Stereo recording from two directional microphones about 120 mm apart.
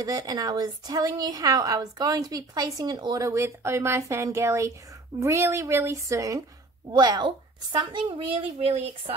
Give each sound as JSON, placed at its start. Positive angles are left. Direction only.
{"t": 0.0, "sound": "a woman's voice", "side_deg": -30}
{"t": 8.5, "sound": "speech", "side_deg": -60}